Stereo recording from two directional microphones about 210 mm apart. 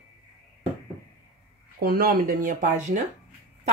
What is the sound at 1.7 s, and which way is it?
Speech, 45° right (ahead or behind).